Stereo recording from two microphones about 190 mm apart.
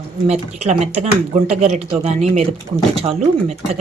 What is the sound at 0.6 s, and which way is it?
Speech, 35° right (ahead or behind).